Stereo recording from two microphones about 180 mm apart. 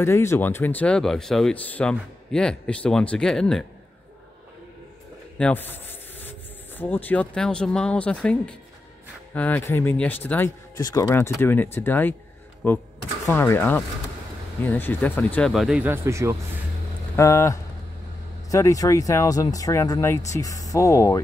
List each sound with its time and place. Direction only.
0.0 s speech: 15° left (ahead or behind)
5.4 s speech: 10° left (ahead or behind)
10.8 s speech: 20° left (ahead or behind); by 16.3 s 15° right (ahead or behind)
17.1 s speech: 15° left (ahead or behind)